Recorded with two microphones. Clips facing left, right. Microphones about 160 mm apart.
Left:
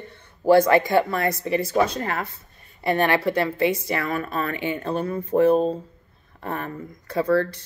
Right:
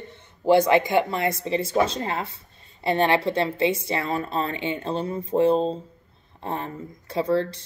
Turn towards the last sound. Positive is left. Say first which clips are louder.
# left 2 dB
turn(degrees=-25)  # may be behind; listen again after turning